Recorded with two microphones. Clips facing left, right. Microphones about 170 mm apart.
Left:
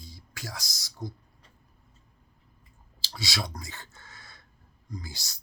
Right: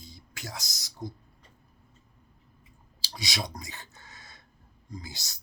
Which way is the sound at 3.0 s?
20° right (ahead or behind).